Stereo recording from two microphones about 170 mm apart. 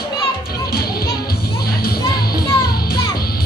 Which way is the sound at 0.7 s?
60° left (ahead or behind).